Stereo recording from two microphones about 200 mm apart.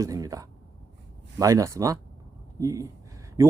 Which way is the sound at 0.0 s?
20° right (ahead or behind).